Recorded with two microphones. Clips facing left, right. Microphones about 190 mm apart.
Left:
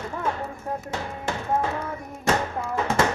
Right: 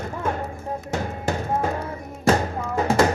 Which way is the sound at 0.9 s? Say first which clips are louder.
Right 4 dB; 40° right (ahead or behind).